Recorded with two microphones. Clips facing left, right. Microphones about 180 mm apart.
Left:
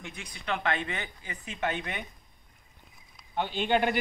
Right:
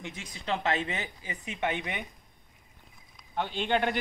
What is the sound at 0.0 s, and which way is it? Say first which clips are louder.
A woman's voice: right 2 dB; 20° right (ahead or behind).